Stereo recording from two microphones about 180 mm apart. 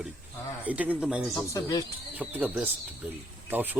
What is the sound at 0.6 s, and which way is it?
Speech, 10° right (ahead or behind).